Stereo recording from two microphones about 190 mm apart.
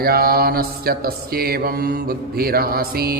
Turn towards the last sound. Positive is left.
turn(degrees=-55)  # may be behind; listen again after turning